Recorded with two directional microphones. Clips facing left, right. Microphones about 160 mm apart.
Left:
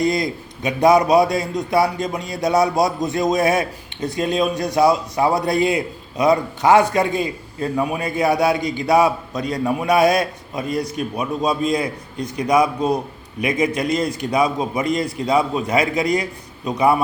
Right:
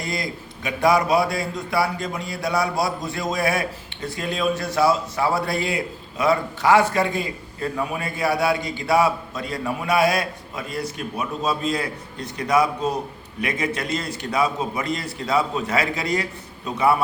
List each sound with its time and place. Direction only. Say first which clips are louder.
0.0 s a man's voice: left 9 dB; 20° left (ahead or behind)